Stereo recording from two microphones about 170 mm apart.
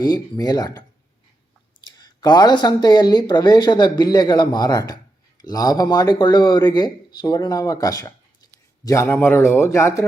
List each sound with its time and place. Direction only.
0.0 s speech: 20° left (ahead or behind)